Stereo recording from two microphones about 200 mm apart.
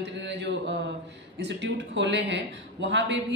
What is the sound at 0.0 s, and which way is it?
Mantra, 60° right (ahead or behind).